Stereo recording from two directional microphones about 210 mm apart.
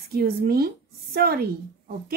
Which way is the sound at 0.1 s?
50° right (ahead or behind).